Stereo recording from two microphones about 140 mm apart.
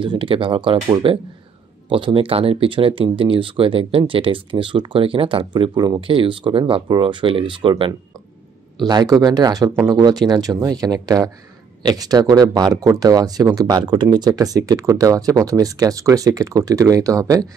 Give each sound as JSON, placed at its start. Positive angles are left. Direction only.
{"t": 0.0, "sound": "speech", "side_deg": -40}